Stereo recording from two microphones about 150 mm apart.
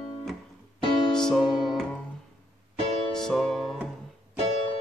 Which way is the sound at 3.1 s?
5° left (ahead or behind).